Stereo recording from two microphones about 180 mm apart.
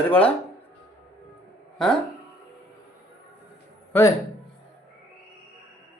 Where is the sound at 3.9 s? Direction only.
10° left (ahead or behind).